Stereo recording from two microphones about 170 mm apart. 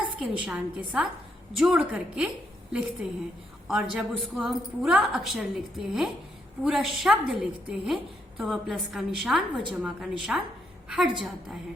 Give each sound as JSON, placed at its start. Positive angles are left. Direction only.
{"t": 0.4, "sound": "a woman's voice", "side_deg": -5}